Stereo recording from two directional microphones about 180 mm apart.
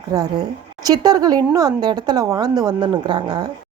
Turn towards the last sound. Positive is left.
turn(degrees=-25)  # may be behind; listen again after turning